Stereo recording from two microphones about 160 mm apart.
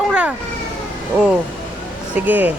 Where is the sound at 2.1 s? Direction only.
10° right (ahead or behind).